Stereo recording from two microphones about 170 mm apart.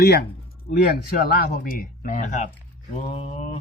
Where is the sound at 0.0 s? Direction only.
75° left (ahead or behind).